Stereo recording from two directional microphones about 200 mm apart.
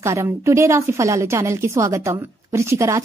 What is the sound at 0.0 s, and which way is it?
A woman's voice, 15° right (ahead or behind).